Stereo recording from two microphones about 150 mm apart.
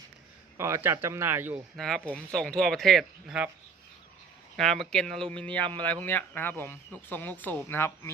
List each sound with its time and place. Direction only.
0.5 s speech: 15° right (ahead or behind)
1.7 s speech: centre (ahead or behind)
4.5 s speech: centre (ahead or behind)